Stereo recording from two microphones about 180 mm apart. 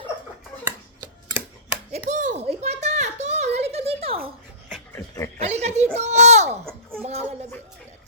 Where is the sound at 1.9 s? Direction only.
40° right (ahead or behind).